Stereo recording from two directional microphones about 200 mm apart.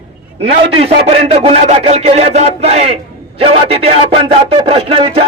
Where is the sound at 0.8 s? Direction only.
30° right (ahead or behind).